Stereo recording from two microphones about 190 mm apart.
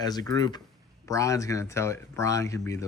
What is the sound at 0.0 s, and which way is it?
Speech, 20° left (ahead or behind).